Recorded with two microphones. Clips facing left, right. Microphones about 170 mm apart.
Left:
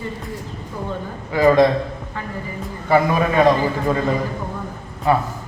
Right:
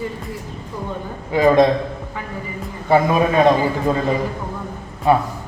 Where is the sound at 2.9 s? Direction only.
20° right (ahead or behind).